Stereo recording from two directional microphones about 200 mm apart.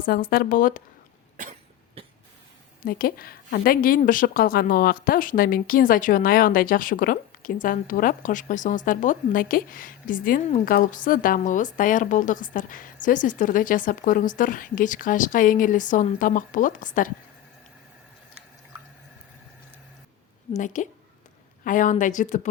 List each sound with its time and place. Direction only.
0.0 s a woman's voice: 50° left (ahead or behind)
2.0 s cough: 30° right (ahead or behind)
2.8 s a woman's voice: 45° left (ahead or behind)
20.6 s speech: 40° left (ahead or behind)